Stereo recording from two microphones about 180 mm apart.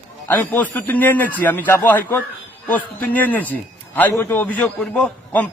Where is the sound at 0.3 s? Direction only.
10° left (ahead or behind).